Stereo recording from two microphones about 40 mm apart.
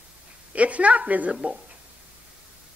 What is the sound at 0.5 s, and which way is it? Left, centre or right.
A woman's voice, right.